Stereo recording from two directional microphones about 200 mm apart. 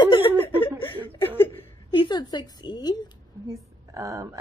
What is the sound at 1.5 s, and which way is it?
Speech, 25° left (ahead or behind).